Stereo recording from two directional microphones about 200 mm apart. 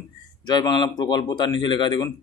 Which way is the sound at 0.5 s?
20° left (ahead or behind).